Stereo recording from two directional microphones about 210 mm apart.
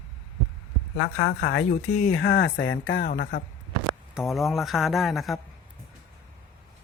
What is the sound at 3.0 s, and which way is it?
Speech, 45° left (ahead or behind).